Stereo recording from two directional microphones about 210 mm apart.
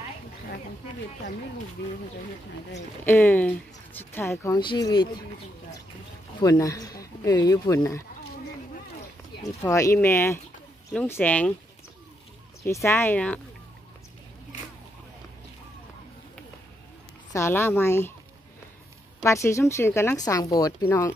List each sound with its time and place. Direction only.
3.1 s speech: 10° left (ahead or behind)
6.4 s speech: 15° left (ahead or behind)
9.6 s speech: 15° left (ahead or behind)
12.6 s speech: 10° left (ahead or behind)
17.3 s speech: 10° left (ahead or behind)
19.2 s speech: 15° left (ahead or behind)